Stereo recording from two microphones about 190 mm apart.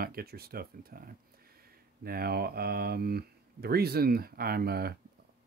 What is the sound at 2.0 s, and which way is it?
Speech, 55° right (ahead or behind).